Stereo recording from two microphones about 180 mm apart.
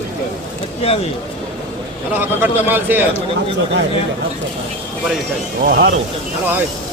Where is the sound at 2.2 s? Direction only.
10° right (ahead or behind).